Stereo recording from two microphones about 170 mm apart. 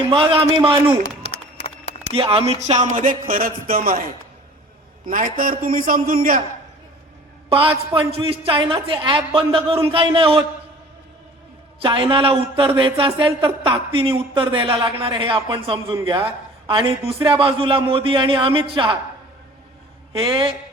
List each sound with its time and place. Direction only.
0.1 s a man's voice: 30° right (ahead or behind)
2.0 s a man's voice: 35° right (ahead or behind)
2.5 s a sound: 40° right (ahead or behind)
5.0 s a man's voice: 50° right (ahead or behind)
7.5 s a man's voice: 30° right (ahead or behind)
11.8 s a man's voice: 30° right (ahead or behind)
20.1 s a man's voice: 30° right (ahead or behind)